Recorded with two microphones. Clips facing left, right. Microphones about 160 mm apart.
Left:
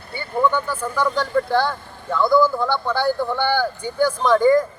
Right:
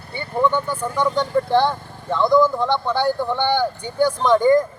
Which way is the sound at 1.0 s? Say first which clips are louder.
Right 1 dB; 20° right (ahead or behind).